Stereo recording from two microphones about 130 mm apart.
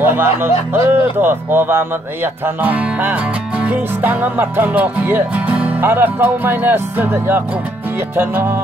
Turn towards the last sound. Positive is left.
turn(degrees=-15)  # may be behind; listen again after turning